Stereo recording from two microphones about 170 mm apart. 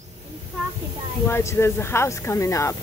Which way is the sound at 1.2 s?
15° left (ahead or behind).